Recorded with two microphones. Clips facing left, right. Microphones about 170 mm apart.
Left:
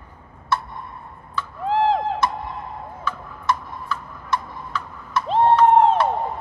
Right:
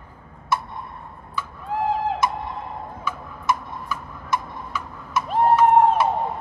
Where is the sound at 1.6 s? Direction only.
80° left.